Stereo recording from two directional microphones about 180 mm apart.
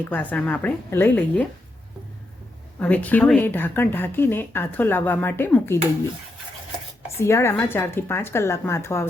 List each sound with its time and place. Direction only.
0.0 s speech: 10° left (ahead or behind)
2.7 s speech: 10° left (ahead or behind)
7.2 s speech: 15° left (ahead or behind)